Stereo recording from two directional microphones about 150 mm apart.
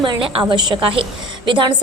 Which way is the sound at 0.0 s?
35° right (ahead or behind).